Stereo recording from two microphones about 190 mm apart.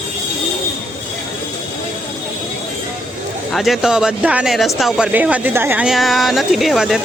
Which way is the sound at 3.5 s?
Centre (ahead or behind).